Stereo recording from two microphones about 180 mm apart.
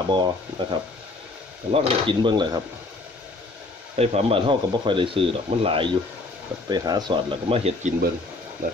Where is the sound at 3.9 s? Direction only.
35° right (ahead or behind).